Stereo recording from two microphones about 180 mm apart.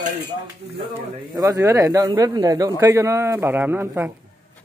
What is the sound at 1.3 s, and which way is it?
Speech, 15° right (ahead or behind).